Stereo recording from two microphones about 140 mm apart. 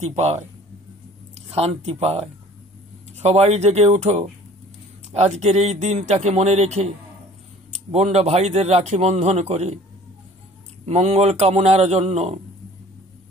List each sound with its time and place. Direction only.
0.1 s a man's voice: 55° right (ahead or behind)
1.5 s a man's voice: 45° right (ahead or behind)
7.9 s a man's voice: 50° right (ahead or behind)
10.9 s a man's voice: 50° right (ahead or behind)